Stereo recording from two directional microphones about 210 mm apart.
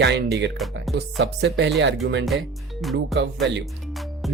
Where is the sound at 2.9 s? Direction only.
55° right (ahead or behind).